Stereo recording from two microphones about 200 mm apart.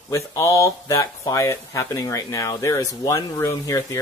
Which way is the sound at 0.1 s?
15° left (ahead or behind).